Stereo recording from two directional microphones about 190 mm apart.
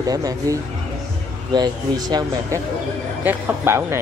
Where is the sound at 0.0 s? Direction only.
20° right (ahead or behind).